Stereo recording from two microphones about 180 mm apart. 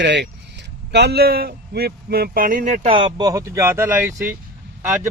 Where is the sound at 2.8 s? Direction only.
30° right (ahead or behind).